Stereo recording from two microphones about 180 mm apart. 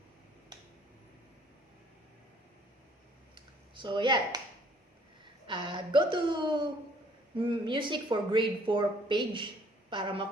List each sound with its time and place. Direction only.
3.8 s speech: 25° right (ahead or behind)